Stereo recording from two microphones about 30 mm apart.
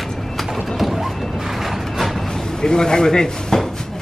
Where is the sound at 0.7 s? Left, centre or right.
Centre.